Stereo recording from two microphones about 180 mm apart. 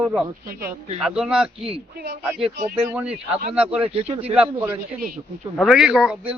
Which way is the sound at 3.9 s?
35° right (ahead or behind).